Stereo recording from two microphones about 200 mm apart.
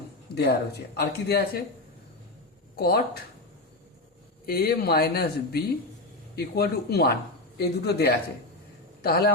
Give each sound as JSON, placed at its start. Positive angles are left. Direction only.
{"t": 0.3, "sound": "speech", "side_deg": 55}
{"t": 2.7, "sound": "speech", "side_deg": 50}
{"t": 4.4, "sound": "a man's voice", "side_deg": 50}